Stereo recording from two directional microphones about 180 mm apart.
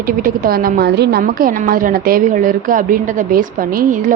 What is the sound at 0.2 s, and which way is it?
A woman's voice, 50° right (ahead or behind).